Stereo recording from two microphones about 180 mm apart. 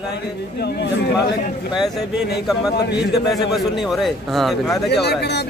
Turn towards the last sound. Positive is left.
turn(degrees=70)  # may be behind; listen again after turning